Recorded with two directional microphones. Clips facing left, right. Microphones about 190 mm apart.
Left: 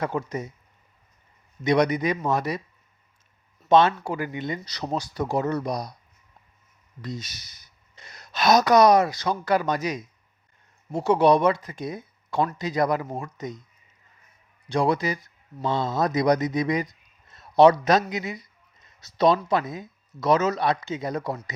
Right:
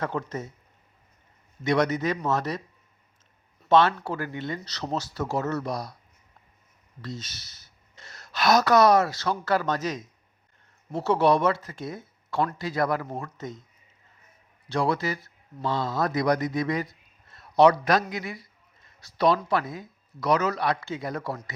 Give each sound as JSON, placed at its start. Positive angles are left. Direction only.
{"t": 0.0, "sound": "speech", "side_deg": 10}
{"t": 1.6, "sound": "speech", "side_deg": 15}
{"t": 3.7, "sound": "speech", "side_deg": 20}
{"t": 7.0, "sound": "speech", "side_deg": 15}
{"t": 14.7, "sound": "speech", "side_deg": 15}